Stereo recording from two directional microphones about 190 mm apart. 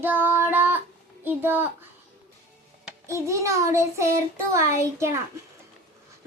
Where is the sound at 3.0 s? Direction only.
15° right (ahead or behind).